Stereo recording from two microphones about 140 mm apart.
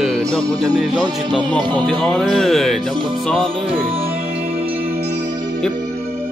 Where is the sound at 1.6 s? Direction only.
30° right (ahead or behind).